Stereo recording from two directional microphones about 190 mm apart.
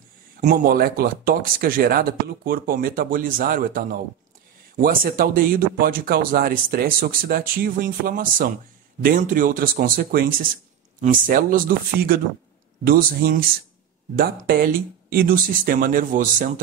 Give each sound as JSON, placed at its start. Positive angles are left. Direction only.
{"t": 0.4, "sound": "speech", "side_deg": -45}